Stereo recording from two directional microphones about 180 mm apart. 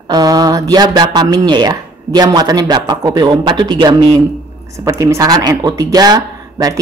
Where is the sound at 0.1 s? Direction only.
20° right (ahead or behind).